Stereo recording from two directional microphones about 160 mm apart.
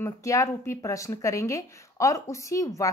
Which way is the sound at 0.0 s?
20° left (ahead or behind).